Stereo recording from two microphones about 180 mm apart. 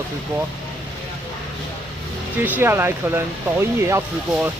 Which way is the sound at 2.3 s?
10° right (ahead or behind).